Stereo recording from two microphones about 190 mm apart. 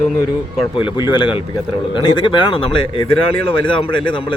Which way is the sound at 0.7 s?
25° left (ahead or behind).